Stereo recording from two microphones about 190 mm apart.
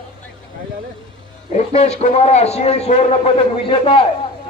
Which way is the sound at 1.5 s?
35° left (ahead or behind).